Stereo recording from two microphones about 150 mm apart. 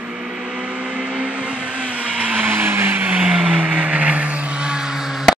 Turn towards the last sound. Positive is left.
turn(degrees=-5)  # may be behind; listen again after turning